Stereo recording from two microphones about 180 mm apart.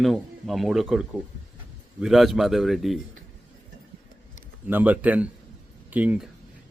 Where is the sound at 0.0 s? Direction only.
Centre (ahead or behind).